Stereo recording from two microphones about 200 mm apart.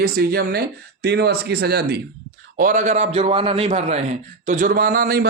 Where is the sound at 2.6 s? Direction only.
40° right (ahead or behind).